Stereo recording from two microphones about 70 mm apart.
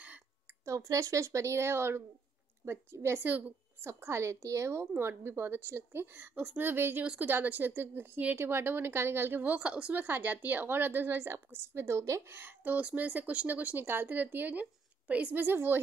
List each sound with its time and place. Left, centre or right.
0.7 s speech: right
3.3 s speech: right
3.8 s speech: right
12.6 s speech: right
15.4 s speech: right